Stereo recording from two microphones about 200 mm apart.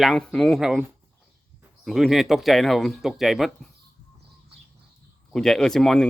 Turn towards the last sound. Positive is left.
turn(degrees=5)  # may be behind; listen again after turning